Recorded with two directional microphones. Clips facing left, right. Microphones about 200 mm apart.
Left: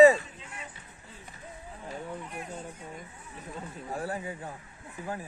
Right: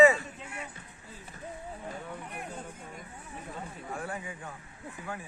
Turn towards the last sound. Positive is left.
turn(degrees=35)  # may be behind; listen again after turning